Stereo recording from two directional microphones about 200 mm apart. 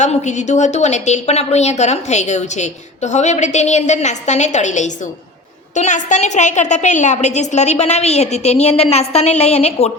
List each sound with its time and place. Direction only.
0.0 s a woman's voice: 35° left (ahead or behind)